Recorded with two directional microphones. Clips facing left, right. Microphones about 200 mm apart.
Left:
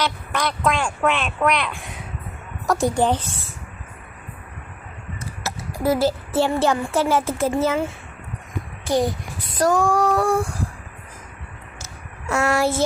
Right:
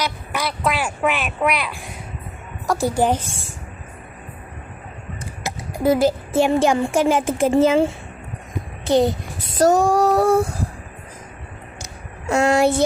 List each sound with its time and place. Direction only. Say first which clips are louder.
0.0 s speech: left 1 dB; 5° right (ahead or behind)
5.2 s speech: right 1 dB; 15° right (ahead or behind)
8.8 s child singing: right 4 dB; 25° right (ahead or behind)
12.2 s a child's voice: right 4 dB; 15° right (ahead or behind)